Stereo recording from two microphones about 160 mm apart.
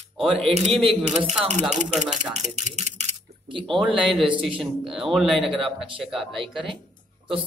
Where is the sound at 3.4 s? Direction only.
30° right (ahead or behind).